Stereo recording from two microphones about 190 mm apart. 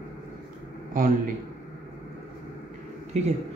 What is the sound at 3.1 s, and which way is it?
Speech, 35° right (ahead or behind).